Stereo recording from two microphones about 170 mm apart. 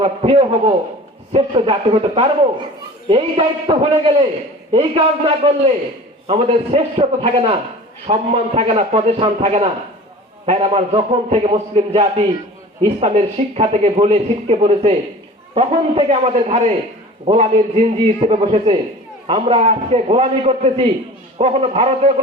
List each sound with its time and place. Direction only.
0.0 s speech: 35° right (ahead or behind)